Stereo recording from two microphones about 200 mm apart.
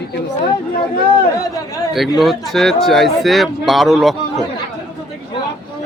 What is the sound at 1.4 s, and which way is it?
Speech, 15° left (ahead or behind).